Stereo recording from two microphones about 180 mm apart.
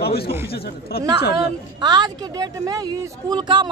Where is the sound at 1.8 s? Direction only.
25° right (ahead or behind).